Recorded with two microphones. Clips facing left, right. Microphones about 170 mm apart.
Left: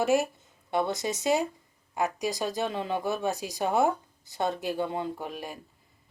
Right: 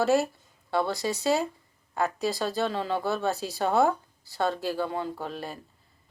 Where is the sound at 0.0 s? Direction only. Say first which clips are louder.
Right 1 dB; 15° left (ahead or behind).